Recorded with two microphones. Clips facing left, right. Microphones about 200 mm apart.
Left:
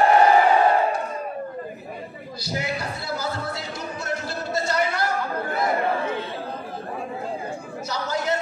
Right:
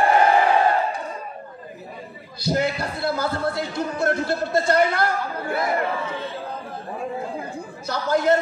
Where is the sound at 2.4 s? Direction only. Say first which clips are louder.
Right 6 dB; 55° right (ahead or behind).